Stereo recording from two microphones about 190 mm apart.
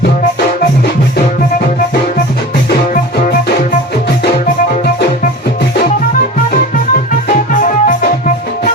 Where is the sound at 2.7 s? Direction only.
50° left (ahead or behind).